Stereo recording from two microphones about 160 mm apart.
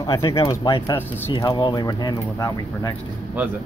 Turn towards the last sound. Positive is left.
turn(degrees=-10)  # may be behind; listen again after turning